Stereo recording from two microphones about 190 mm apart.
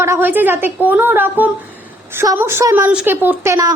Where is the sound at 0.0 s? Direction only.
10° right (ahead or behind).